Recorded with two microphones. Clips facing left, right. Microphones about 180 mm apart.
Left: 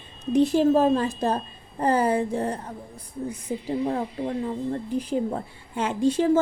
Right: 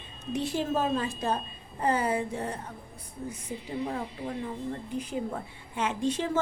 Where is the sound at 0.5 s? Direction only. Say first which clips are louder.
Left 6 dB; 40° left (ahead or behind).